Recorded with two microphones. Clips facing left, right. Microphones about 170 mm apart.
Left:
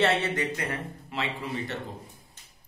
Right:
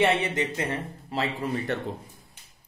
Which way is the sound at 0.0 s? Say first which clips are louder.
Right 2 dB; 15° right (ahead or behind).